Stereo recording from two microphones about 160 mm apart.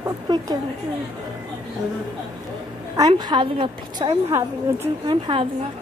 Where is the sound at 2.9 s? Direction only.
25° right (ahead or behind).